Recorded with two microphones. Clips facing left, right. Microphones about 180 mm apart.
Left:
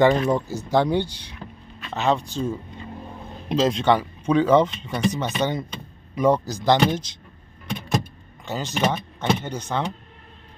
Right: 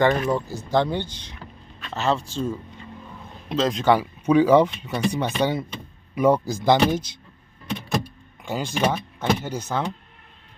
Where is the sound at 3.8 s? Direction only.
10° right (ahead or behind).